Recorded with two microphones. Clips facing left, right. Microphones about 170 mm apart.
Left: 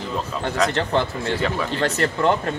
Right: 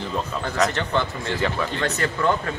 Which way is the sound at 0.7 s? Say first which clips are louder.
Left 3 dB; 30° left (ahead or behind).